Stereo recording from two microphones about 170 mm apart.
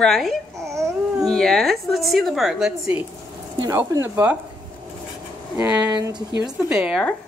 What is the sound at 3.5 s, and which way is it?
Speech, 20° right (ahead or behind).